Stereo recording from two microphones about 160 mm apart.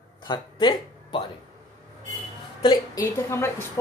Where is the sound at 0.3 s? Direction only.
30° left (ahead or behind).